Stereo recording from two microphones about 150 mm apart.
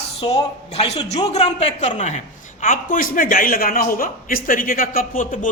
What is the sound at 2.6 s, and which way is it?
A man's voice, 65° left (ahead or behind).